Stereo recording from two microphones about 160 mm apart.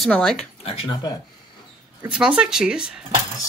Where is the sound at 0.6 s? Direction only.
35° left (ahead or behind).